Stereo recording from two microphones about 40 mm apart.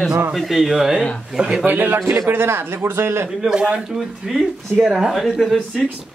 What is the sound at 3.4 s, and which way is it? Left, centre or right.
Speech, centre.